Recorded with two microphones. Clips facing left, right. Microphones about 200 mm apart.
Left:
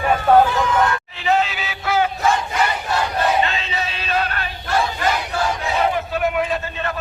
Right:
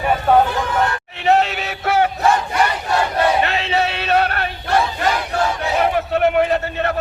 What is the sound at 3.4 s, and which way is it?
Music, 70° right (ahead or behind).